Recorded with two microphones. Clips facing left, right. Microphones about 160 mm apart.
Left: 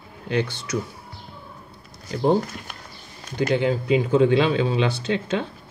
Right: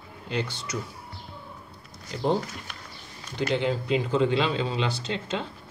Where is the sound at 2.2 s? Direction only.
50° left (ahead or behind).